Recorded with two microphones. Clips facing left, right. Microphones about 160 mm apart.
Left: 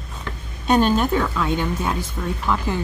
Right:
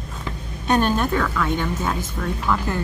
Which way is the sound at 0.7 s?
15° left (ahead or behind).